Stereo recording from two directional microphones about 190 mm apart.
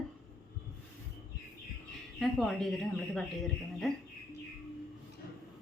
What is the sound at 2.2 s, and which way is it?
A woman's voice, centre (ahead or behind).